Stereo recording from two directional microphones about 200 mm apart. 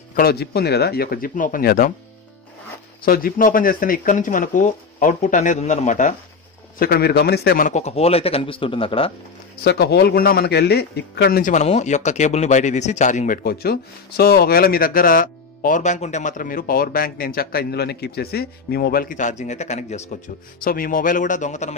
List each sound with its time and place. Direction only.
0.1 s a man's voice: 50° left (ahead or behind)
3.1 s speech: 45° left (ahead or behind)
6.8 s speech: 50° left (ahead or behind); by 9.1 s 25° left (ahead or behind)
9.6 s a man's voice: 55° left (ahead or behind); by 20.1 s 35° left (ahead or behind)
20.6 s speech: 45° left (ahead or behind)